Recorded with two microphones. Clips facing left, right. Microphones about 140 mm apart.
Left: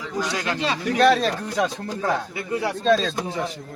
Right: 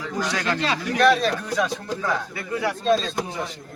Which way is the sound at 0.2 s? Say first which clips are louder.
Even; 10° left (ahead or behind).